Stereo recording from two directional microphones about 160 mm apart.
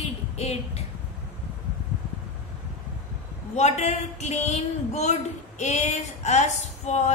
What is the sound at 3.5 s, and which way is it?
A woman's voice, 45° left (ahead or behind).